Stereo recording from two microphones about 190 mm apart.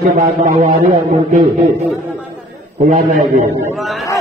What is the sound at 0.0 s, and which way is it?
Speech, 40° right (ahead or behind).